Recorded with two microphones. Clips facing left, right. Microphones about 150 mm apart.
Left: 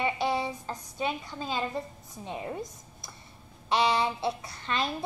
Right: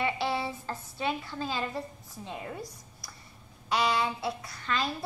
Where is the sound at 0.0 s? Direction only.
20° left (ahead or behind).